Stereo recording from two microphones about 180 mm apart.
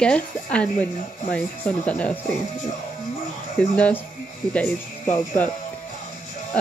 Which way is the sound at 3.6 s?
5° left (ahead or behind).